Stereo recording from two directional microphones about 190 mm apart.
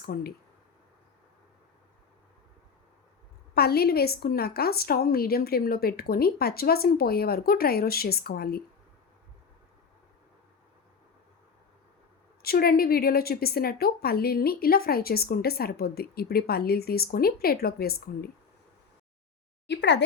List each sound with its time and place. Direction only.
0.0 s a woman's voice: 55° left (ahead or behind)
3.5 s a woman's voice: 55° left (ahead or behind)
12.4 s a woman's voice: 55° left (ahead or behind)
19.6 s speech: 65° left (ahead or behind)